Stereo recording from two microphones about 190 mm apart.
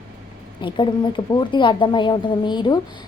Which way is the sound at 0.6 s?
25° left (ahead or behind).